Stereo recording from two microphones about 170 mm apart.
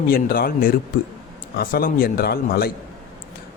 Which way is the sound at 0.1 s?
60° left (ahead or behind).